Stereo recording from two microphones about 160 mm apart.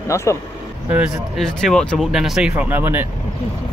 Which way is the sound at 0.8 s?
5° right (ahead or behind).